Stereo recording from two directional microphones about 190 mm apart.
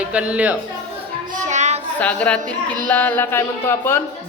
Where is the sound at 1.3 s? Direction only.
40° right (ahead or behind).